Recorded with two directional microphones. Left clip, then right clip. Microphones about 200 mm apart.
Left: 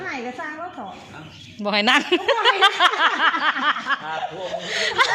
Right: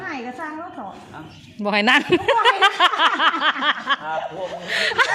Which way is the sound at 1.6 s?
15° right (ahead or behind).